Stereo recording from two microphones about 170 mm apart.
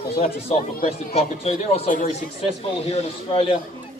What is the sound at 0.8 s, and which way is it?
Speech, 35° left (ahead or behind).